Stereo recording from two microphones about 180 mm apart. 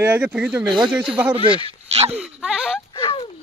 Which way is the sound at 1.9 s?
35° right (ahead or behind).